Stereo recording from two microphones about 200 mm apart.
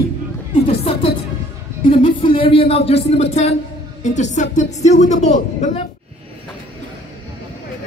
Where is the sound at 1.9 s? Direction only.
25° left (ahead or behind).